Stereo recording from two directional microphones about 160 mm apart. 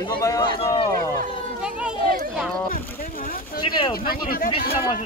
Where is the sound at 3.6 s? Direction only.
30° left (ahead or behind).